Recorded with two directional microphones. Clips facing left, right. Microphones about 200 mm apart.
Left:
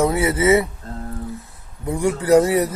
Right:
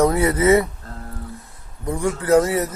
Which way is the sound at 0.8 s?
25° left (ahead or behind).